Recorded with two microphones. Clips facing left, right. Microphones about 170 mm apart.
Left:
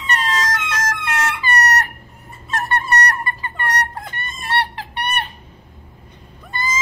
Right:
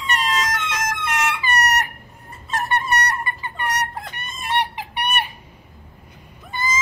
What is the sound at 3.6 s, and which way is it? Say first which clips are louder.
Chicken: left 1 dB; centre (ahead or behind).